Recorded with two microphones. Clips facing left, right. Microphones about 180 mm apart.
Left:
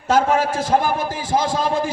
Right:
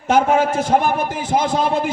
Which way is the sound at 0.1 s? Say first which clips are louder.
Right 2 dB; 25° right (ahead or behind).